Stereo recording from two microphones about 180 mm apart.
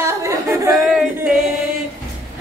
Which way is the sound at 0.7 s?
Centre (ahead or behind).